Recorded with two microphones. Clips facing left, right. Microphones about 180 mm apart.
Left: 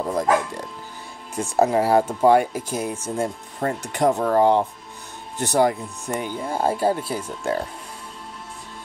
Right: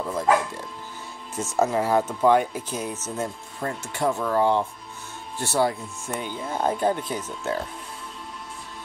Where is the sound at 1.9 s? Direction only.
35° left (ahead or behind).